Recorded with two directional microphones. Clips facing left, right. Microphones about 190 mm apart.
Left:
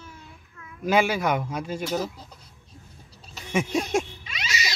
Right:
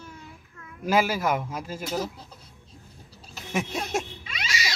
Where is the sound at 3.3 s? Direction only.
Centre (ahead or behind).